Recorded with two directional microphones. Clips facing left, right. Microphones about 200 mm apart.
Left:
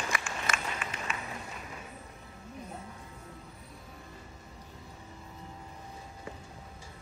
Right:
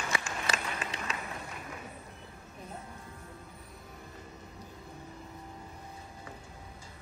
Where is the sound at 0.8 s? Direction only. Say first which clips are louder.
Right 1 dB; 40° right (ahead or behind).